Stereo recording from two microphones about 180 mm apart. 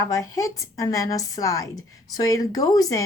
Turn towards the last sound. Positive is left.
turn(degrees=20)  # may be behind; listen again after turning